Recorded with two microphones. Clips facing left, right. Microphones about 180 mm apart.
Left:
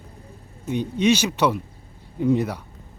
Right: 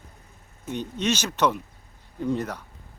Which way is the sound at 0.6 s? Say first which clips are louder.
Left 7 dB; 10° left (ahead or behind).